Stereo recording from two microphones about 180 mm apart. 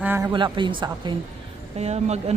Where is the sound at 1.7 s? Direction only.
35° right (ahead or behind).